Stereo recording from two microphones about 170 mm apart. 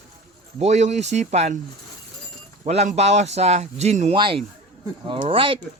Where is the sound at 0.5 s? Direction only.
40° right (ahead or behind).